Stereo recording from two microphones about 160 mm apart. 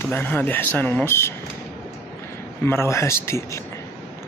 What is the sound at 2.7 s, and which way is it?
Speech, 15° left (ahead or behind).